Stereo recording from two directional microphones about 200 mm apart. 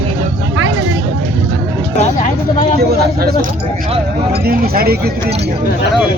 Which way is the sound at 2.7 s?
50° right (ahead or behind).